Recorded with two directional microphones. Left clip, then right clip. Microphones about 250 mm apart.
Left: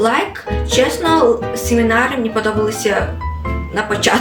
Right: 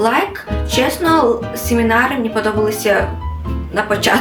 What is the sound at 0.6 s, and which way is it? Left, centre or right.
Speech, centre.